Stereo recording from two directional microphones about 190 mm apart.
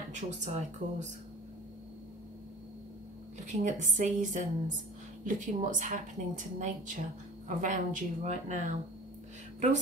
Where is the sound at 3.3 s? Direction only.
40° right (ahead or behind).